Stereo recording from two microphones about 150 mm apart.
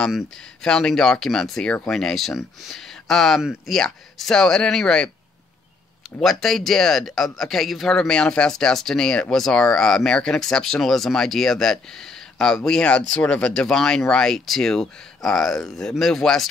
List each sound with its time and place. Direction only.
0.0 s speech: 5° left (ahead or behind)
6.1 s speech: centre (ahead or behind)